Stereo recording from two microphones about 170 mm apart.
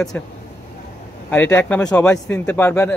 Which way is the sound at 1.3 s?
10° left (ahead or behind).